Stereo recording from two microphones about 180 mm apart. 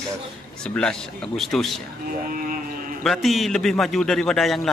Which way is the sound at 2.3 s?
50° right (ahead or behind).